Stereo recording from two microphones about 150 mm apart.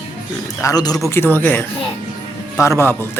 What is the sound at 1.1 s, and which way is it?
Speech, 15° left (ahead or behind).